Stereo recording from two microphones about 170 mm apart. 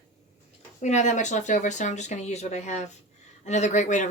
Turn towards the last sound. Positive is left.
turn(degrees=45)  # may be behind; listen again after turning